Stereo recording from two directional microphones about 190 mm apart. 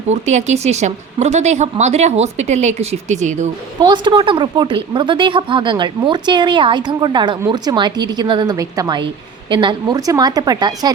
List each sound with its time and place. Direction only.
0.1 s a woman's voice: 35° right (ahead or behind)
3.8 s a woman's voice: 25° right (ahead or behind)